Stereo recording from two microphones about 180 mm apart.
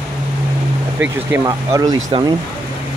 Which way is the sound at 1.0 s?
15° right (ahead or behind).